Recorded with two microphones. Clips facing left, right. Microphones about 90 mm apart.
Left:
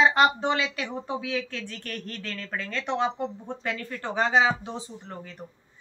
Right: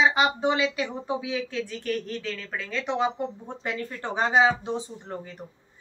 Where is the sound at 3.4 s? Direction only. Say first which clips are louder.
Even; 20° right (ahead or behind).